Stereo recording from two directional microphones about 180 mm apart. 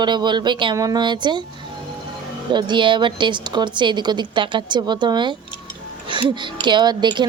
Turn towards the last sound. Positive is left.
turn(degrees=-25)  # may be behind; listen again after turning